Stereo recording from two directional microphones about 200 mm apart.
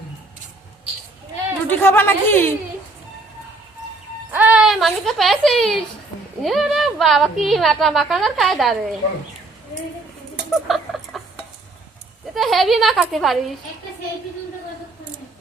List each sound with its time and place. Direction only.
1.6 s speech: 10° left (ahead or behind)
4.3 s a woman's voice: 10° right (ahead or behind)
10.5 s chicken: centre (ahead or behind)
12.3 s a woman's voice: centre (ahead or behind)